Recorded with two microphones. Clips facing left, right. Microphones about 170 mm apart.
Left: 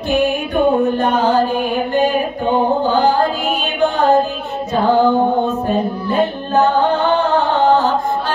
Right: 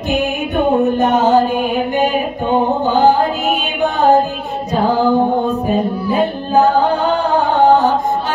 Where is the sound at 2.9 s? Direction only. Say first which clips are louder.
Right 6 dB; 20° right (ahead or behind).